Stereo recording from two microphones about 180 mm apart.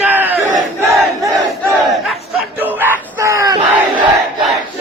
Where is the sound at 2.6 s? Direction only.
10° right (ahead or behind).